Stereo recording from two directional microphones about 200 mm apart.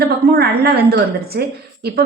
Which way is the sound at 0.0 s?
50° right (ahead or behind).